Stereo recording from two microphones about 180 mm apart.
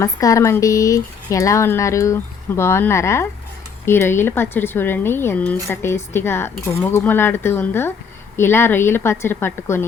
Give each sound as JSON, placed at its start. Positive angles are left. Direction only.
{"t": 0.0, "sound": "speech", "side_deg": 20}